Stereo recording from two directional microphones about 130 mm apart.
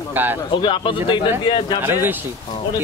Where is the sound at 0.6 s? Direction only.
40° left (ahead or behind).